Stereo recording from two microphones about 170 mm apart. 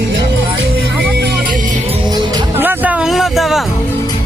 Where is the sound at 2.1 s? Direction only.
20° right (ahead or behind).